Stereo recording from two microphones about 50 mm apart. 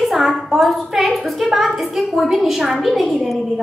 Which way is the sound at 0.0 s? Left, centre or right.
Centre.